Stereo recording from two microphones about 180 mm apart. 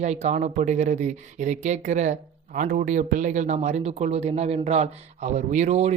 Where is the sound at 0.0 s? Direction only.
40° right (ahead or behind).